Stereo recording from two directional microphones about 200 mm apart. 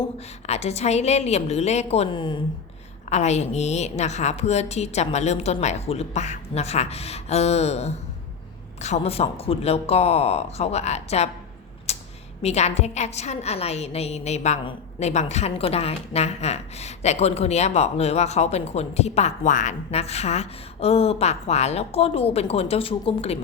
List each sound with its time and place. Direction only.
0.4 s a woman's voice: 35° left (ahead or behind)
3.1 s a woman's voice: 35° left (ahead or behind)
11.9 s a sound: 30° left (ahead or behind)
12.4 s a woman's voice: 30° left (ahead or behind)